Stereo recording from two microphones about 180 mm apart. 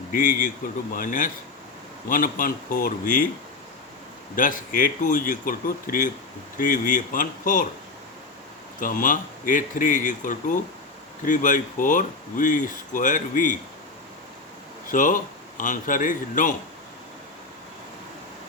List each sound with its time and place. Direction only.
0.1 s speech: 50° left (ahead or behind)
4.4 s speech: 50° left (ahead or behind)
8.8 s speech: 50° left (ahead or behind)
14.8 s a man's voice: 45° left (ahead or behind)